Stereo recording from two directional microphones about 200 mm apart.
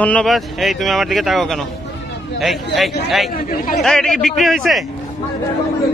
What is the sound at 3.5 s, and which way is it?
Speech, 45° left (ahead or behind).